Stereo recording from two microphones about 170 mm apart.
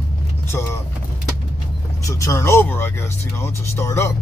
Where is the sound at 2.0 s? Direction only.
20° left (ahead or behind).